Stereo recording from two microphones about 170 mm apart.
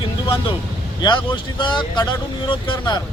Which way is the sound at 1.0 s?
25° left (ahead or behind).